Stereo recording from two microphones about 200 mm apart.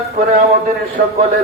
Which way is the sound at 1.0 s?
50° right (ahead or behind).